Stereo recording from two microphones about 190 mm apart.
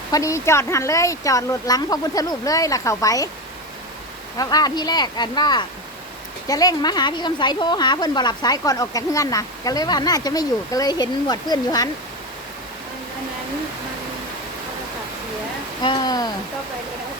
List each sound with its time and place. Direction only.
0.1 s speech: 15° left (ahead or behind)
4.4 s a woman's voice: 20° left (ahead or behind)
15.8 s a woman's voice: 20° left (ahead or behind)